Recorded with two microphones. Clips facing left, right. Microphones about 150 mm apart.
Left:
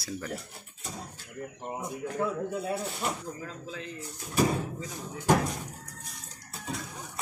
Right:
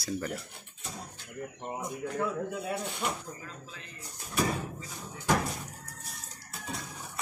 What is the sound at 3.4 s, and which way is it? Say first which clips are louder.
Speech: left 7 dB; 90° left.